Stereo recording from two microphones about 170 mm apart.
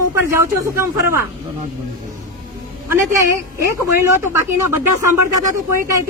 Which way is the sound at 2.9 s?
15° right (ahead or behind).